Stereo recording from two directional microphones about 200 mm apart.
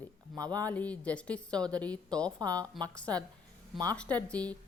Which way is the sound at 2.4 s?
20° right (ahead or behind).